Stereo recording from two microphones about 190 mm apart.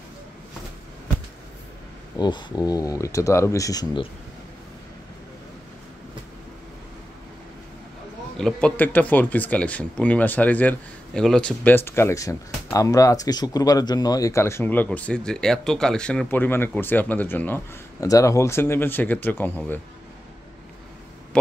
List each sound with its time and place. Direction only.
2.1 s speech: 20° left (ahead or behind)
8.4 s speech: 5° left (ahead or behind)